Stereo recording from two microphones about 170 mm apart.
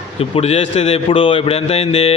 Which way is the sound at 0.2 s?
35° left (ahead or behind).